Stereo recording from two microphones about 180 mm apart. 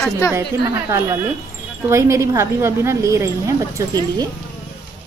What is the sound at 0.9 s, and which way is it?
A woman's voice, 15° right (ahead or behind).